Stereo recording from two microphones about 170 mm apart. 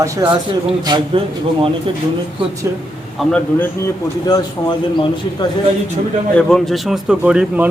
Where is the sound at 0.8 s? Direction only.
30° right (ahead or behind).